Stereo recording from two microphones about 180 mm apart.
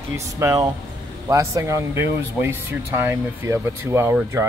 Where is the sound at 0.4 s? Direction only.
20° right (ahead or behind).